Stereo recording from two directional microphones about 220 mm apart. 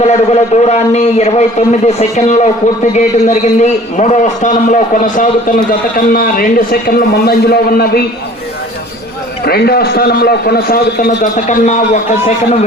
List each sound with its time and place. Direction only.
0.0 s a man's voice: 30° left (ahead or behind); by 8.0 s 45° left (ahead or behind)
9.4 s a man's voice: 45° left (ahead or behind)